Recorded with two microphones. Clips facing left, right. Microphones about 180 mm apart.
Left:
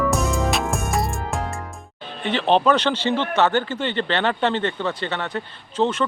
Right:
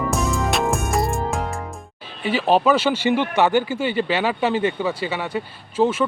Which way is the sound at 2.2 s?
5° right (ahead or behind).